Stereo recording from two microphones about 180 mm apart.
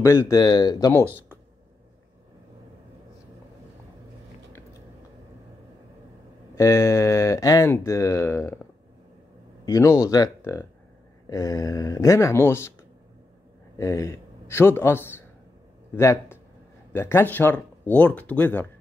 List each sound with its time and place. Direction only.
0.0 s speech: 15° left (ahead or behind)
6.5 s speech: 15° left (ahead or behind)
9.7 s speech: 20° left (ahead or behind)
13.7 s a man's voice: 15° left (ahead or behind)